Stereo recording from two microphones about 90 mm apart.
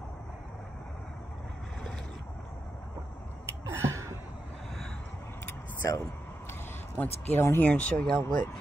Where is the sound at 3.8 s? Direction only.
35° right (ahead or behind).